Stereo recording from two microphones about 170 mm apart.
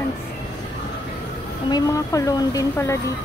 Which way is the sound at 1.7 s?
20° left (ahead or behind).